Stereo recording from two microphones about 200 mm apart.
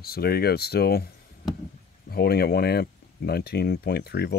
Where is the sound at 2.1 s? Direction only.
50° left (ahead or behind).